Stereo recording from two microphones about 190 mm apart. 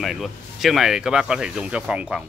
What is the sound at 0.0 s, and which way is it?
Speech, centre (ahead or behind).